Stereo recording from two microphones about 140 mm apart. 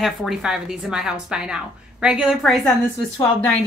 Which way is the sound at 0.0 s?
Centre (ahead or behind).